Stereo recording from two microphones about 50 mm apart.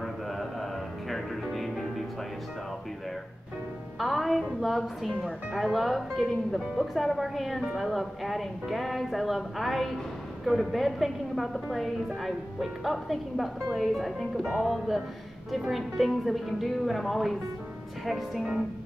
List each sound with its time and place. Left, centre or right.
0.0 s mantra: centre
1.1 s music: centre
4.0 s a woman's voice: centre